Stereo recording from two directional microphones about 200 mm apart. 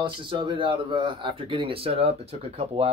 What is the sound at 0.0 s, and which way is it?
Speech, 25° right (ahead or behind).